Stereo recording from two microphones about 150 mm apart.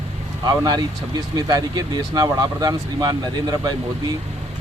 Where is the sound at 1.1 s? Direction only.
25° right (ahead or behind).